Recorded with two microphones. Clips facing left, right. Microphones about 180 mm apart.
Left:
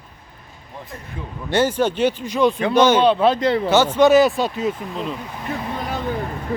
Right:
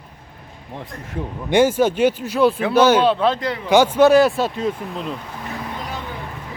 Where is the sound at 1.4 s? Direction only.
10° right (ahead or behind).